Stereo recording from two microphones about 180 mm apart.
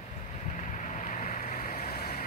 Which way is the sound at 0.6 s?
45° left (ahead or behind).